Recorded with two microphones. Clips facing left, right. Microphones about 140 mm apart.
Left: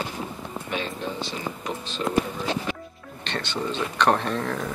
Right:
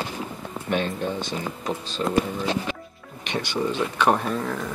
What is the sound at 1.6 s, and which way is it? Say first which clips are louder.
Speech: right 2 dB; 40° right (ahead or behind).